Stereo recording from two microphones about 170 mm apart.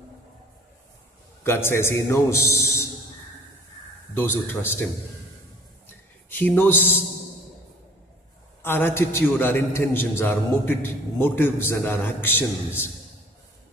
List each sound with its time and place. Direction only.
1.4 s a man's voice: 15° left (ahead or behind)
4.1 s a man's voice: 10° left (ahead or behind)
6.2 s a man's voice: 10° left (ahead or behind)
8.6 s a man's voice: 10° left (ahead or behind)